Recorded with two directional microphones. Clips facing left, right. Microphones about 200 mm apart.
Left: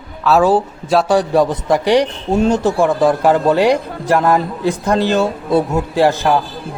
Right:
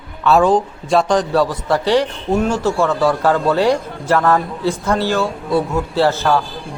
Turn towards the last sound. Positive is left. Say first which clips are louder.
# left 2 dB
turn(degrees=15)  # may be behind; listen again after turning